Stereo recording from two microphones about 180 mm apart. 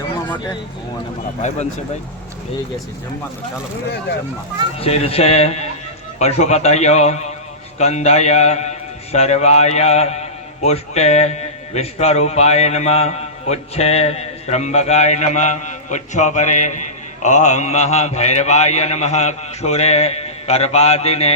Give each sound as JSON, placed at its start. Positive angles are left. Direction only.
{"t": 1.4, "sound": "a man's voice", "side_deg": 40}
{"t": 4.8, "sound": "a man's voice", "side_deg": 35}